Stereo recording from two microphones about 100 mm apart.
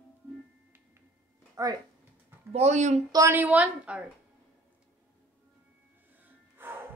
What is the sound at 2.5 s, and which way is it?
Speech, 90° right.